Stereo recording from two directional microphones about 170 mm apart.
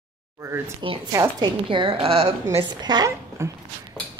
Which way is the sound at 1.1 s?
20° right (ahead or behind).